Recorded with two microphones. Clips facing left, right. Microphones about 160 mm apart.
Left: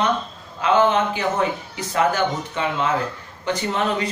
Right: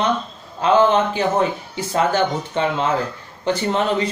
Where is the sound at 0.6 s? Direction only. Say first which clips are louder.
Right 2 dB; 30° right (ahead or behind).